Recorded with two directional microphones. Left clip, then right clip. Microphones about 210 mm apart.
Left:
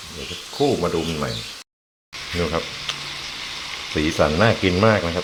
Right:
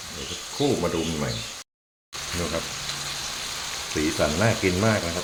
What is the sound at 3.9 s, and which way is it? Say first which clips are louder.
Speech: left 5 dB; 20° left (ahead or behind).